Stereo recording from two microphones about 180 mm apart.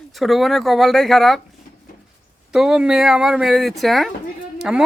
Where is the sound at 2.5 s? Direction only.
5° right (ahead or behind).